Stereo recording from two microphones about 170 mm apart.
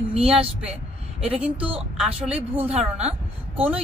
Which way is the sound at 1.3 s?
5° right (ahead or behind).